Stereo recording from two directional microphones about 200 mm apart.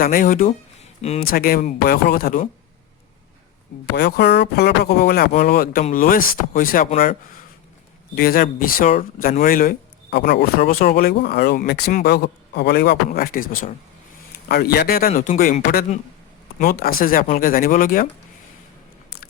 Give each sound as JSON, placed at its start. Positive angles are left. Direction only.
{"t": 0.0, "sound": "speech", "side_deg": 45}
{"t": 3.9, "sound": "speech", "side_deg": 55}